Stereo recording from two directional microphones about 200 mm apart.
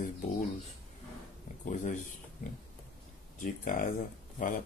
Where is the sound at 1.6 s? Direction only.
40° left (ahead or behind).